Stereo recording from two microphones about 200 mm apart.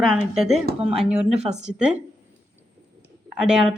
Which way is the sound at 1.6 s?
5° right (ahead or behind).